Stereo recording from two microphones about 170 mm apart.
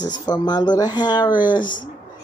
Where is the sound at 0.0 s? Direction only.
25° left (ahead or behind).